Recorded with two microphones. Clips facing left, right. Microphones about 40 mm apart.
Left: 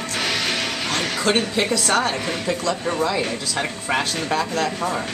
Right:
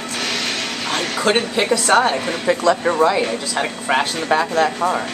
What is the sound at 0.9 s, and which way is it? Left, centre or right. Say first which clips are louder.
A woman's voice: right 4 dB; centre.